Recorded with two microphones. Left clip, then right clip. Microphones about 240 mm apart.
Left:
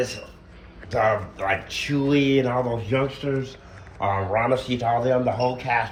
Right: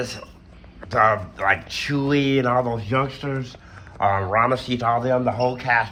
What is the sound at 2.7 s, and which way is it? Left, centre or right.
Speech, right.